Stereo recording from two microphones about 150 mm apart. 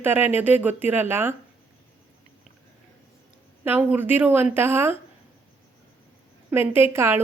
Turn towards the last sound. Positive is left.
turn(degrees=-15)  # may be behind; listen again after turning